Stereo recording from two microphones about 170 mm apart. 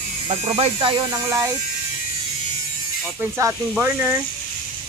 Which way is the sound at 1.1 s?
15° right (ahead or behind).